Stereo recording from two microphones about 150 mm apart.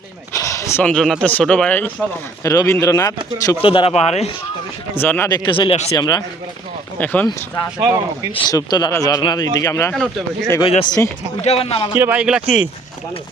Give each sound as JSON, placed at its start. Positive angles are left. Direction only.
{"t": 0.3, "sound": "speech", "side_deg": 20}
{"t": 3.6, "sound": "a man's voice", "side_deg": 35}
{"t": 4.9, "sound": "speech", "side_deg": 15}
{"t": 5.3, "sound": "a man's voice", "side_deg": 35}
{"t": 7.0, "sound": "speech", "side_deg": 10}
{"t": 8.4, "sound": "speech", "side_deg": 25}
{"t": 10.6, "sound": "speech", "side_deg": 30}
{"t": 11.4, "sound": "a man's voice", "side_deg": 40}
{"t": 11.9, "sound": "speech", "side_deg": -10}